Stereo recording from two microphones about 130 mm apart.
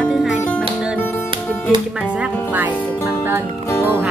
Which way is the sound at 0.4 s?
10° left (ahead or behind).